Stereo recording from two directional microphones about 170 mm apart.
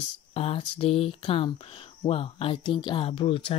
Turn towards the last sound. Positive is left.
turn(degrees=30)  # may be behind; listen again after turning